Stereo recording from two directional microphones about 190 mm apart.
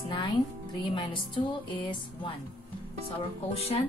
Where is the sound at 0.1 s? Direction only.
25° left (ahead or behind).